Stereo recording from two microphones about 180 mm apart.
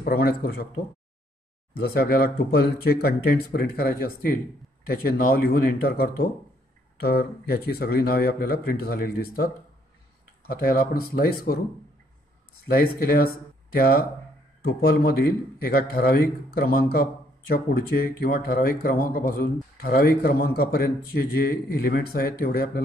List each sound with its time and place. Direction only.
0.0 s a man's voice: 55° left (ahead or behind)
1.8 s a man's voice: 55° left (ahead or behind)
12.6 s a man's voice: 55° left (ahead or behind)
14.6 s a man's voice: 55° left (ahead or behind)